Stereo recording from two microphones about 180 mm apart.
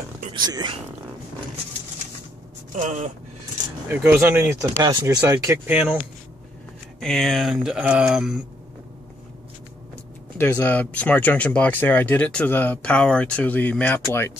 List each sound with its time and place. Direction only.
0.3 s speech: 25° right (ahead or behind)
2.7 s speech: 40° right (ahead or behind)
3.9 s speech: 10° right (ahead or behind)
7.0 s speech: centre (ahead or behind)
10.3 s speech: 10° left (ahead or behind)